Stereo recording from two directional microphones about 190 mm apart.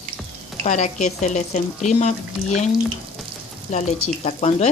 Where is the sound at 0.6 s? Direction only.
35° left (ahead or behind).